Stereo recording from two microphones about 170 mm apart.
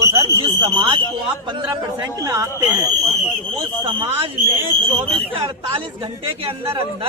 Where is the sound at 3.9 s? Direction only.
30° right (ahead or behind).